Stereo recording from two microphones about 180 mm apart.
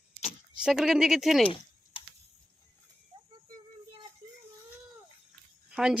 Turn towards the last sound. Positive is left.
turn(degrees=-5)  # may be behind; listen again after turning